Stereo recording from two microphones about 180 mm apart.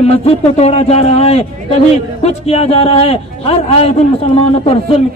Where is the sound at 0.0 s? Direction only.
35° left (ahead or behind).